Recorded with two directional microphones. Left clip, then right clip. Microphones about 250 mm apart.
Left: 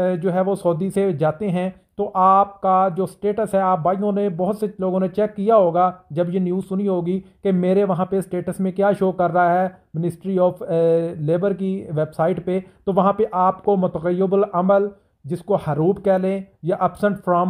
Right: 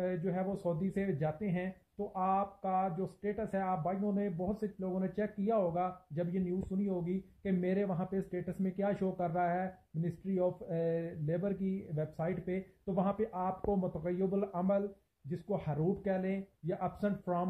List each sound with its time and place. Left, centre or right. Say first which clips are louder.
0.0 s speech: left 16 dB; left